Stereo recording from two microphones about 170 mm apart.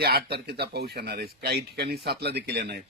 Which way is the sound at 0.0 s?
70° right (ahead or behind).